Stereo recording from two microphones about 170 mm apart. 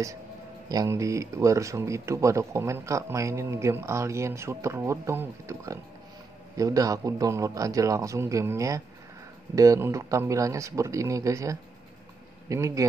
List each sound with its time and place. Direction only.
0.7 s a man's voice: 20° right (ahead or behind)